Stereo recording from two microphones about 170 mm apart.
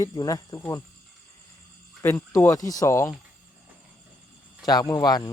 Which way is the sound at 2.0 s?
15° left (ahead or behind).